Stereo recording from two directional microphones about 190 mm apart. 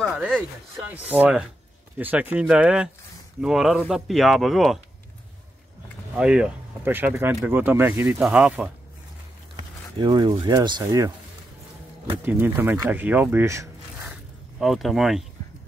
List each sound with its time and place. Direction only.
0.0 s speech: centre (ahead or behind)
6.1 s speech: 5° right (ahead or behind)
9.9 s speech: 25° right (ahead or behind)
12.2 s speech: 10° right (ahead or behind)
14.6 s speech: centre (ahead or behind)